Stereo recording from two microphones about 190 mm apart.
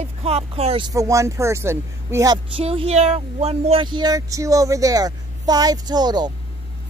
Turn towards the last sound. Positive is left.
turn(degrees=-20)  # may be behind; listen again after turning